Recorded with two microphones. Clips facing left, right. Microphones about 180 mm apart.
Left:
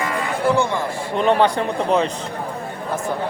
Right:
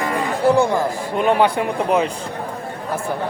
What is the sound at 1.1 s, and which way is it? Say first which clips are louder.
Speech: even; 10° right (ahead or behind).